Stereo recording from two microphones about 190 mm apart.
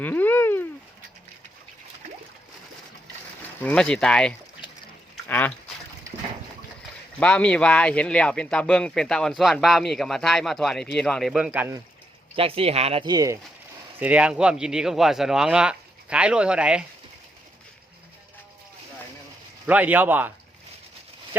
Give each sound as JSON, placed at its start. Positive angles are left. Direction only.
{"t": 0.0, "sound": "a sound", "side_deg": 10}
{"t": 3.6, "sound": "speech", "side_deg": 5}
{"t": 7.2, "sound": "speech", "side_deg": 5}
{"t": 12.4, "sound": "speech", "side_deg": -30}
{"t": 14.0, "sound": "speech", "side_deg": -5}
{"t": 19.6, "sound": "speech", "side_deg": -10}